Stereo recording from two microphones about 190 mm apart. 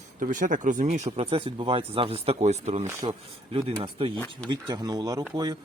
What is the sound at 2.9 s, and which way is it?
Speech, 25° right (ahead or behind).